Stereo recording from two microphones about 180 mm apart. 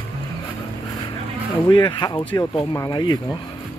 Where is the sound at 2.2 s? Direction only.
10° left (ahead or behind).